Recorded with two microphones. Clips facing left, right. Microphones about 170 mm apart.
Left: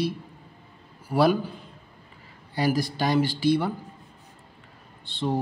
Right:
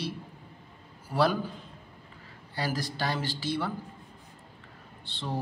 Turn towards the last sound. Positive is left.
turn(degrees=15)  # may be behind; listen again after turning